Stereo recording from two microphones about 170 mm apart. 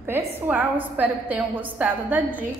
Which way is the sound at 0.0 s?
10° right (ahead or behind).